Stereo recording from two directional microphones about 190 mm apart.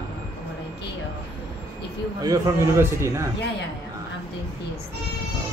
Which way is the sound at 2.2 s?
15° right (ahead or behind).